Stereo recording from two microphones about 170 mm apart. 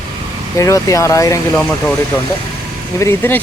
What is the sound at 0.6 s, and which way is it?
Speech, 20° left (ahead or behind).